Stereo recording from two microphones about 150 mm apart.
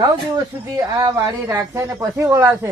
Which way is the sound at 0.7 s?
25° right (ahead or behind).